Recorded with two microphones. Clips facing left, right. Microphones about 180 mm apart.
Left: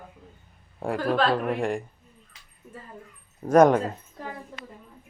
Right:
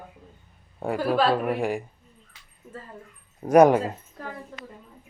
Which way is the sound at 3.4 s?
10° right (ahead or behind).